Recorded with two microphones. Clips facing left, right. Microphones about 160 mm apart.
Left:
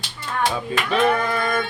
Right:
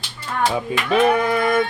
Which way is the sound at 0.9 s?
15° right (ahead or behind).